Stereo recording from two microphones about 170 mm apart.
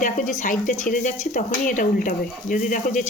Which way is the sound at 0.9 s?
50° left (ahead or behind).